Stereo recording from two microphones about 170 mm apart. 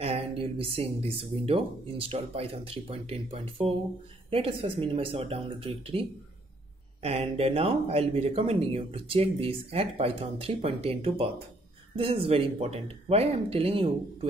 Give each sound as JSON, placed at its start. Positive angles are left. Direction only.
{"t": 0.0, "sound": "speech", "side_deg": -35}